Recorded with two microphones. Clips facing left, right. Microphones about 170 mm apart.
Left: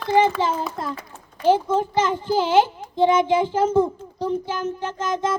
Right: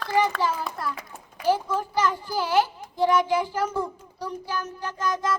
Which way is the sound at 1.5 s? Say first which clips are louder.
Left 6 dB; 25° left (ahead or behind).